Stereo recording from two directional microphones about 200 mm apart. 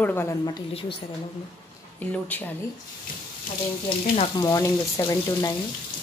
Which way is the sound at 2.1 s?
10° left (ahead or behind).